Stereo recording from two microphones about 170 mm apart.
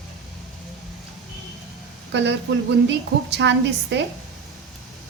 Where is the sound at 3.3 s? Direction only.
90° right.